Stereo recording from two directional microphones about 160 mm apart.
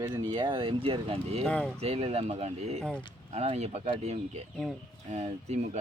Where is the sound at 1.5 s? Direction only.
5° left (ahead or behind).